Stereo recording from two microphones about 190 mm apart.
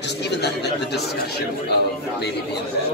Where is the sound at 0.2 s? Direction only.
60° left (ahead or behind).